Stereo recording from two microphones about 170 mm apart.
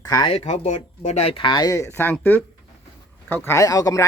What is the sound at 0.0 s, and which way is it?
Speech, 25° left (ahead or behind).